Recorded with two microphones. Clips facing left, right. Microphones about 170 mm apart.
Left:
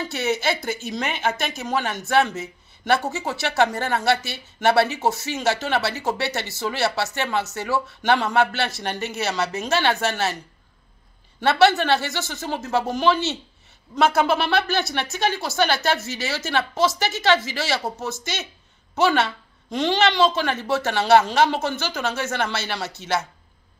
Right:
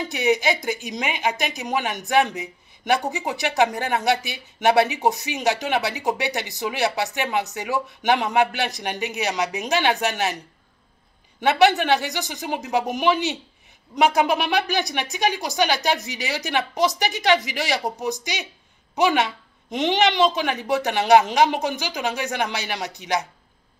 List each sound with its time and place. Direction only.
0.0 s a woman's voice: 15° right (ahead or behind)
11.4 s a woman's voice: 15° right (ahead or behind)